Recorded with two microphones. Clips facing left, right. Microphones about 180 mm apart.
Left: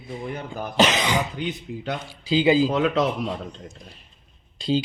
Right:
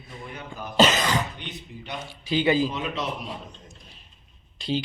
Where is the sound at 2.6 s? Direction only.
90° left.